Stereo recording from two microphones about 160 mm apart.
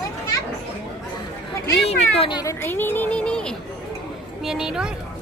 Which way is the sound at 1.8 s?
40° left (ahead or behind).